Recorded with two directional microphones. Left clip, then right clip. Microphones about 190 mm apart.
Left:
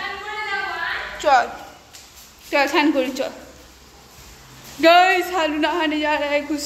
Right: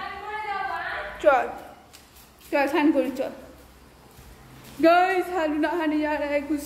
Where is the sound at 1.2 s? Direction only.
10° right (ahead or behind).